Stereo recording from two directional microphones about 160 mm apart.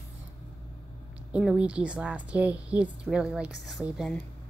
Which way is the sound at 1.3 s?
5° right (ahead or behind).